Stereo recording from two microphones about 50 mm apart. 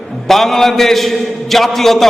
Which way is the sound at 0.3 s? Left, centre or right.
Centre.